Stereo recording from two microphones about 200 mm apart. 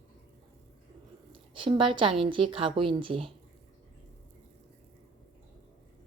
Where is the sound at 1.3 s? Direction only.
25° right (ahead or behind).